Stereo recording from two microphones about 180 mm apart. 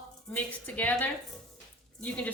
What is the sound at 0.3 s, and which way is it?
A woman's voice, 10° left (ahead or behind).